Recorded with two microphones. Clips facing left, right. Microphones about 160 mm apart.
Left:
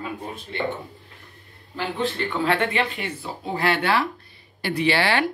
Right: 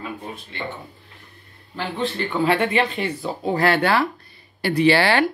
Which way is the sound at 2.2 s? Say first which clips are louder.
Right 4 dB; 10° right (ahead or behind).